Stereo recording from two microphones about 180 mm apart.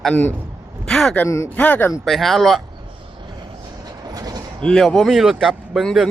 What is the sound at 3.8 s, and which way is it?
Train, 20° right (ahead or behind).